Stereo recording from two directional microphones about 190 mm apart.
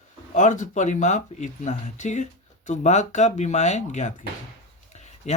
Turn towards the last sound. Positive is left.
turn(degrees=35)  # may be behind; listen again after turning